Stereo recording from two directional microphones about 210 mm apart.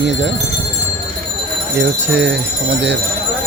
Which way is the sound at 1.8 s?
55° right (ahead or behind).